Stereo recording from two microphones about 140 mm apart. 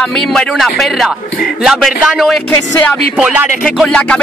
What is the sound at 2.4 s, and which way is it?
Music, 15° left (ahead or behind).